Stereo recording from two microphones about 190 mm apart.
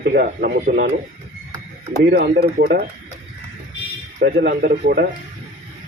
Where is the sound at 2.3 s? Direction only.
60° right (ahead or behind).